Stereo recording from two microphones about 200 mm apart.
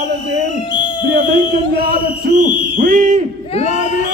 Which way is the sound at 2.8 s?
40° right (ahead or behind).